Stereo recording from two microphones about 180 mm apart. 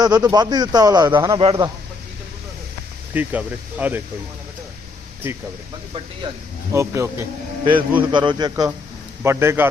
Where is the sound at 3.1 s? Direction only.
10° right (ahead or behind).